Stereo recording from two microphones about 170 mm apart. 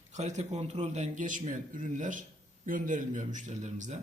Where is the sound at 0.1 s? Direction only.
45° right (ahead or behind).